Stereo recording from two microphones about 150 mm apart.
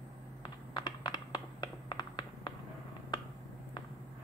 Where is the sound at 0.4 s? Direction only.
30° left (ahead or behind).